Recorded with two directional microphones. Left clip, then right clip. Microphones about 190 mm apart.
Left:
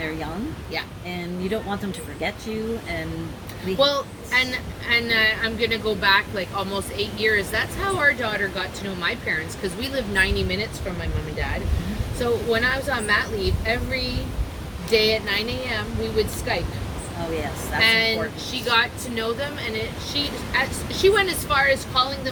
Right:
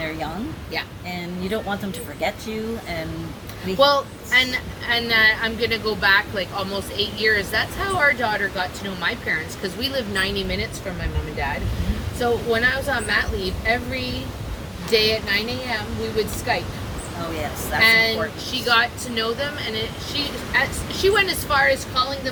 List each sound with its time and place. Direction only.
1.1 s speech: 20° right (ahead or behind)
3.8 s a woman's voice: 15° left (ahead or behind)
12.2 s a woman's voice: 15° left (ahead or behind)
14.8 s a woman's voice: 10° left (ahead or behind)
17.7 s a woman's voice: 10° left (ahead or behind)